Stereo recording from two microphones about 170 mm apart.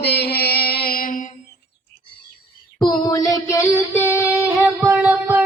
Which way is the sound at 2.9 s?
20° left (ahead or behind).